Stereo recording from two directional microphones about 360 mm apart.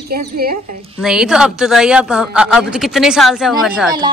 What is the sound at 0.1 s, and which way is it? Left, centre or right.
Speech, right.